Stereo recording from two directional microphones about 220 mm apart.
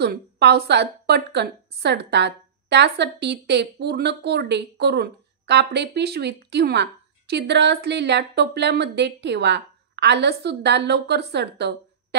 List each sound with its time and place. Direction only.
0.0 s a woman's voice: 50° right (ahead or behind)